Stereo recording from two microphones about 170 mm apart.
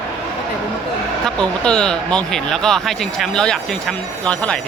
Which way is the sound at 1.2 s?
5° left (ahead or behind).